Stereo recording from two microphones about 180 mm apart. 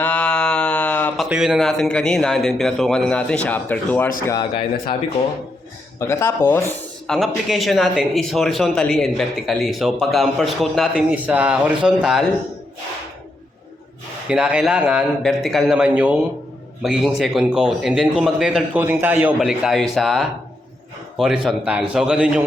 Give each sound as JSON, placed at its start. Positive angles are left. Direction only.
{"t": 0.0, "sound": "speech", "side_deg": 5}
{"t": 4.3, "sound": "a man's voice", "side_deg": 25}
{"t": 6.0, "sound": "speech", "side_deg": 15}
{"t": 6.7, "sound": "speech", "side_deg": 0}
{"t": 14.3, "sound": "speech", "side_deg": -5}
{"t": 21.4, "sound": "speech", "side_deg": -5}